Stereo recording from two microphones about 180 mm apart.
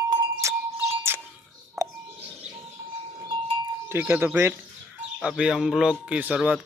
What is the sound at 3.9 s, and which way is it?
A man's voice, 10° right (ahead or behind).